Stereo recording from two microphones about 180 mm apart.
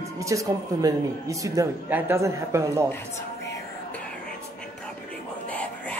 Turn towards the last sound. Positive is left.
turn(degrees=10)  # may be behind; listen again after turning